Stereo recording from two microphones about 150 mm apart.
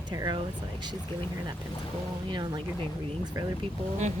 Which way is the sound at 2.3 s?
30° right (ahead or behind).